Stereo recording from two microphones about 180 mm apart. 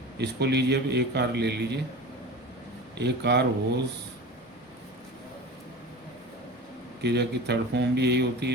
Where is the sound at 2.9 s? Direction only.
70° right (ahead or behind).